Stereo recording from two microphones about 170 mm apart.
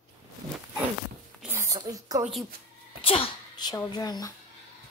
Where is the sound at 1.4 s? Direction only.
15° right (ahead or behind).